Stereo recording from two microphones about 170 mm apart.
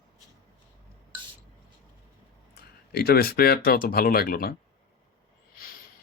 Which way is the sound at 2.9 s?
70° left (ahead or behind).